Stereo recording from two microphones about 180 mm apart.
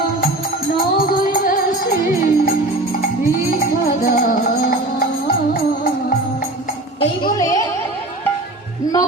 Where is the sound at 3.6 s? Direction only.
60° left (ahead or behind).